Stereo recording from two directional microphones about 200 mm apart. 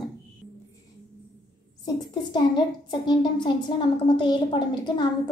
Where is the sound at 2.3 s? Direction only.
20° left (ahead or behind).